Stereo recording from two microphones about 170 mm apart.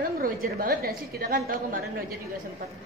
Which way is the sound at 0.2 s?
60° right (ahead or behind).